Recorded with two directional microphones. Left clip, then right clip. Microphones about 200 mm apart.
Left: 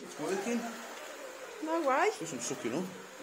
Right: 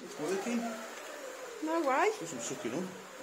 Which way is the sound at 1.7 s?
Centre (ahead or behind).